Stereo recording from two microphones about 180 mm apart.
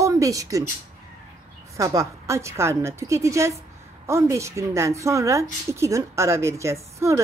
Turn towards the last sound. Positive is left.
turn(degrees=-15)  # may be behind; listen again after turning